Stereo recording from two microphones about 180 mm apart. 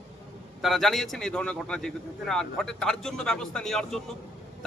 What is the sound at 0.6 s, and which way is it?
A man's voice, centre (ahead or behind).